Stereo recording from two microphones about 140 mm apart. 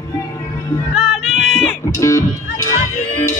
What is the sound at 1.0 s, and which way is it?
Music, centre (ahead or behind).